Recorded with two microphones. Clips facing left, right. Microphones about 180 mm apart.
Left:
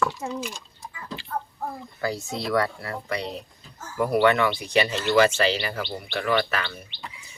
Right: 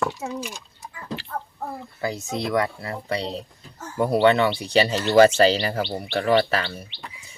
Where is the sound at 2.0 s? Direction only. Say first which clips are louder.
Right 1 dB; 20° right (ahead or behind).